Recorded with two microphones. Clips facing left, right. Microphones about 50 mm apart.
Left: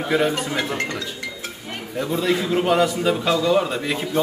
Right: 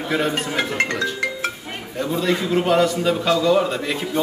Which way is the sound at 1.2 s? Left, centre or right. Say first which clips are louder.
Right 7 dB; right.